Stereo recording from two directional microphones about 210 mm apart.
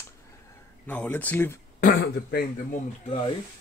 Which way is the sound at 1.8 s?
45° left (ahead or behind).